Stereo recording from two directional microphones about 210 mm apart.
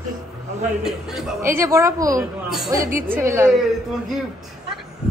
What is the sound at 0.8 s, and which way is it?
A man's voice, centre (ahead or behind).